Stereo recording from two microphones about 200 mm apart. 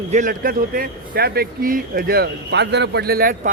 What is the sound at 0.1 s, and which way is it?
Speech, 40° right (ahead or behind).